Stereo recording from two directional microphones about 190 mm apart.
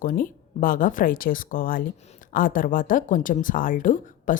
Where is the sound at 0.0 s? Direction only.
45° left (ahead or behind).